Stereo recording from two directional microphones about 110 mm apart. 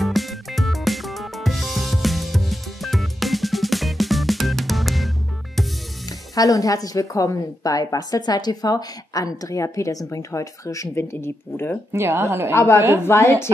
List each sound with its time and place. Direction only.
0.0 s music: centre (ahead or behind)
6.0 s speech: 35° left (ahead or behind)
11.9 s speech: 25° right (ahead or behind)
12.5 s a woman's voice: 25° left (ahead or behind)